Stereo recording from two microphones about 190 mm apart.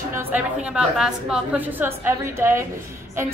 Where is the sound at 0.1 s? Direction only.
10° right (ahead or behind).